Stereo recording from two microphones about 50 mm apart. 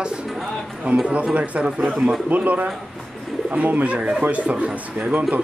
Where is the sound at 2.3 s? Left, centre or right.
Right.